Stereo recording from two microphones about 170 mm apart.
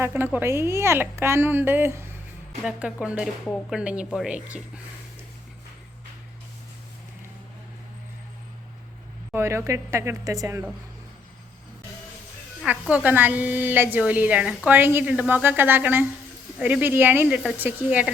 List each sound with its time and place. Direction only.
0.0 s a woman's voice: 10° right (ahead or behind)
9.3 s a woman's voice: 15° right (ahead or behind)
12.9 s a woman's voice: 10° right (ahead or behind)